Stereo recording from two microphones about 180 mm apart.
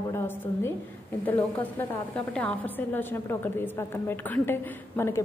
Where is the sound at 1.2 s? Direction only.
10° left (ahead or behind).